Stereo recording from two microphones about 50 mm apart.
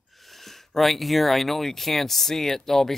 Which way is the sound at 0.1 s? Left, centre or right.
Centre.